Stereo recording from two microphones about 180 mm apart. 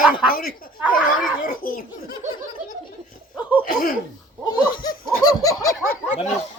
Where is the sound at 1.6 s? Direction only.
50° left (ahead or behind).